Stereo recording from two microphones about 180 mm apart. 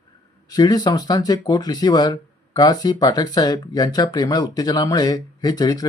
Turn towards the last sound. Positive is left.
turn(degrees=20)  # may be behind; listen again after turning